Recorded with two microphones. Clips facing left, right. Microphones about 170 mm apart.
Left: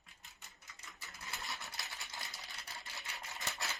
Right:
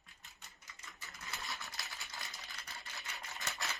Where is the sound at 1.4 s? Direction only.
Centre (ahead or behind).